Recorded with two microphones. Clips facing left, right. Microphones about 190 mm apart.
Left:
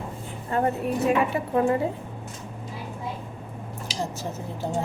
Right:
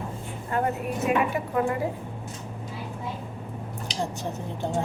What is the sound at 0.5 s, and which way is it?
A woman's voice, 30° left (ahead or behind).